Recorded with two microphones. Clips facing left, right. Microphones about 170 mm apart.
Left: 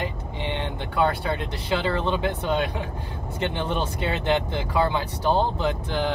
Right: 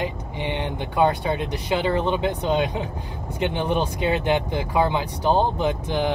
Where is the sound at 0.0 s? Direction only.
15° right (ahead or behind).